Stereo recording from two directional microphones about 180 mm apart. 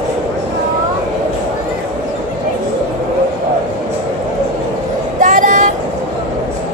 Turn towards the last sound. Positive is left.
turn(degrees=-50)  # may be behind; listen again after turning